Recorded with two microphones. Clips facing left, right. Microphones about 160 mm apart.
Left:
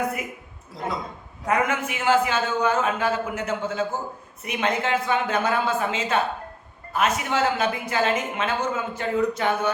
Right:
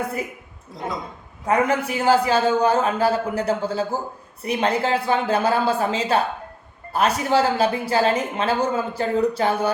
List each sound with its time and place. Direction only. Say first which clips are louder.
1.5 s speech: right 4 dB; 35° right (ahead or behind)